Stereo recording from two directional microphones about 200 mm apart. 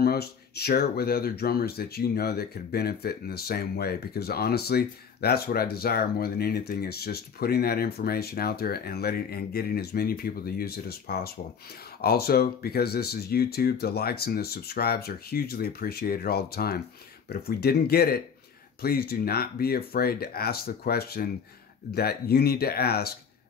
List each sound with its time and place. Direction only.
0.0 s speech: 50° left (ahead or behind)